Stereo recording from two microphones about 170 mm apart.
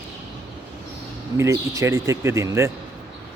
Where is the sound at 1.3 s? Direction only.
15° right (ahead or behind).